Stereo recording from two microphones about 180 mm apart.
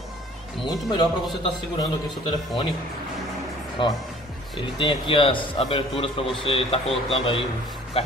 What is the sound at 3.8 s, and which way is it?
A man's voice, 30° left (ahead or behind).